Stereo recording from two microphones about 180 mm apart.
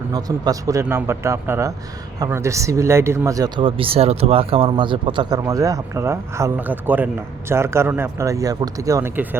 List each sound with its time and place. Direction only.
0.1 s speech: 20° right (ahead or behind)